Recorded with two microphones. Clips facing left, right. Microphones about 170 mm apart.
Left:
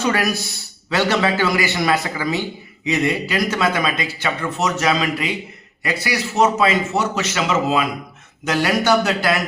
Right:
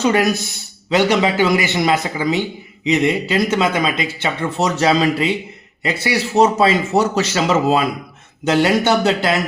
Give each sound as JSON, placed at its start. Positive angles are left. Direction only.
{"t": 0.0, "sound": "a man's voice", "side_deg": -20}
{"t": 8.4, "sound": "speech", "side_deg": -25}